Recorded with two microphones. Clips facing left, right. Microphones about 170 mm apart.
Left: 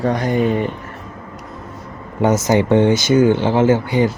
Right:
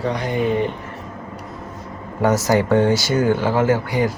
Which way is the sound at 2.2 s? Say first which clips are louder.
Left 2 dB; 20° left (ahead or behind).